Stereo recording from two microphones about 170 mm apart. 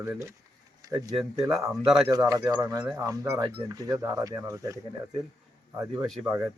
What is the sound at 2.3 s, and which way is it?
Speech, 20° right (ahead or behind).